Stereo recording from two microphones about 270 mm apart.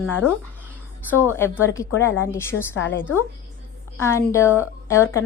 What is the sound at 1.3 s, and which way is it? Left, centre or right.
A woman's voice, centre.